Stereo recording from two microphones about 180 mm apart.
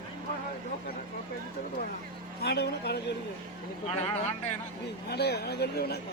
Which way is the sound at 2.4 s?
65° left (ahead or behind).